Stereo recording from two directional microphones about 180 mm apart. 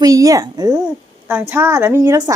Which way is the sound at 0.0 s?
20° right (ahead or behind).